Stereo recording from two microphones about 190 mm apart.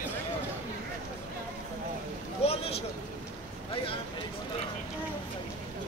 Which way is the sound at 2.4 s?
30° left (ahead or behind).